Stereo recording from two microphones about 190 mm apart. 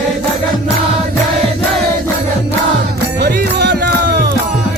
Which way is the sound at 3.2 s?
55° right (ahead or behind).